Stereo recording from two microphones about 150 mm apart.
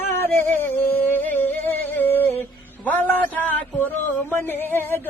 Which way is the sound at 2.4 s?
10° left (ahead or behind).